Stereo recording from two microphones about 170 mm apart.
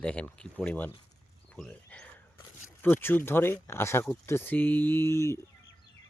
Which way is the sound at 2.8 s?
10° left (ahead or behind).